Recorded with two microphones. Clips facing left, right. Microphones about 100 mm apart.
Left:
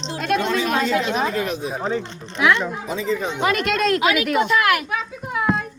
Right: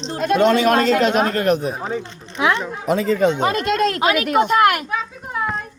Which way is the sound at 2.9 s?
65° right (ahead or behind).